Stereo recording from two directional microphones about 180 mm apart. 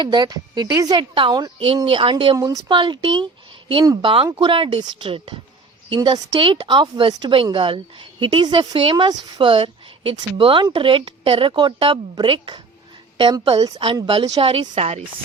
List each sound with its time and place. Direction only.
0.0 s a woman's voice: 25° right (ahead or behind)